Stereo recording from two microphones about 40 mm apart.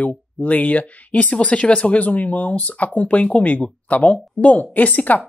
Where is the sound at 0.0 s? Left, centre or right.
Left.